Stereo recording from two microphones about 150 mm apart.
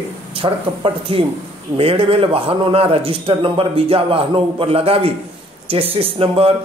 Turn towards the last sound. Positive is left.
turn(degrees=-40)  # may be behind; listen again after turning